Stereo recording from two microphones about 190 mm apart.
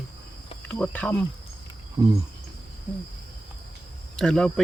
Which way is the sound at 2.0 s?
20° right (ahead or behind).